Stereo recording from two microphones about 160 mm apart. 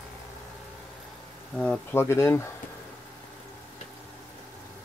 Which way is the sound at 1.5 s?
5° left (ahead or behind).